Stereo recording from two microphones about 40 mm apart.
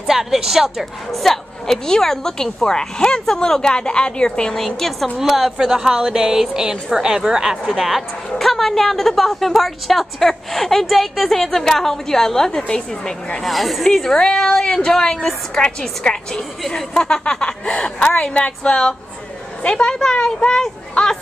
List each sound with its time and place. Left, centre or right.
0.0 s a woman's voice: centre
1.1 s a sound: centre
1.9 s a woman's voice: centre
4.6 s a woman's voice: centre
5.2 s a woman's voice: centre
7.6 s a woman's voice: centre; by 13.4 s left
13.4 s speech: centre
14.1 s a woman's voice: centre